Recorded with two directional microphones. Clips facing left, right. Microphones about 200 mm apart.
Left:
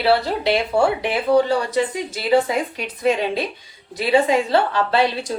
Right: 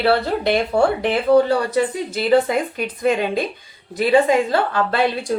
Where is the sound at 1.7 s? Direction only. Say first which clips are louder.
Right 2 dB; 50° right (ahead or behind).